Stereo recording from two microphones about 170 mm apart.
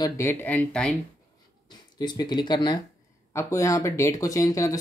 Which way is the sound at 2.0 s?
25° left (ahead or behind).